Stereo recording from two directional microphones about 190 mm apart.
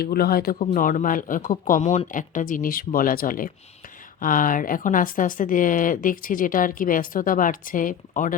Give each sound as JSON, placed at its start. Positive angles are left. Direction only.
{"t": 0.0, "sound": "a woman's voice", "side_deg": 55}